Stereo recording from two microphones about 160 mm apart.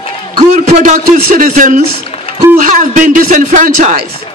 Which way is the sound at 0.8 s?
55° right (ahead or behind).